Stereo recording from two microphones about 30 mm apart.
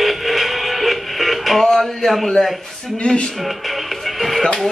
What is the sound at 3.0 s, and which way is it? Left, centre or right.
Speech, left.